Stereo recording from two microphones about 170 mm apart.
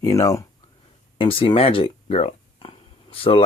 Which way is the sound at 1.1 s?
30° left (ahead or behind).